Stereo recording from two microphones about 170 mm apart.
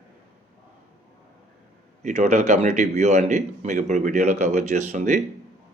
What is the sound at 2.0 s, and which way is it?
Speech, 45° right (ahead or behind).